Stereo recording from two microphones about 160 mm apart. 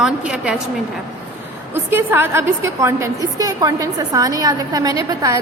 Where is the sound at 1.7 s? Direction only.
15° right (ahead or behind).